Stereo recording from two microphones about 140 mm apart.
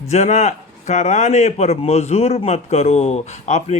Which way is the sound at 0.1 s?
55° left (ahead or behind).